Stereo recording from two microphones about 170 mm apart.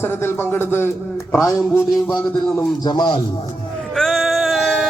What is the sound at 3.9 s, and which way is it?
Music, centre (ahead or behind).